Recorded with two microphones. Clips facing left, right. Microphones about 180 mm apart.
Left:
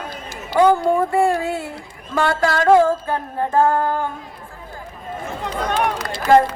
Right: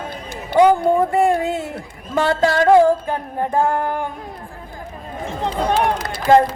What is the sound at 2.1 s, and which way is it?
Female singing, 20° right (ahead or behind).